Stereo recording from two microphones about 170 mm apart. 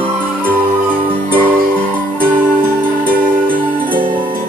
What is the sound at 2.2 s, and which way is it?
Music, 55° right (ahead or behind).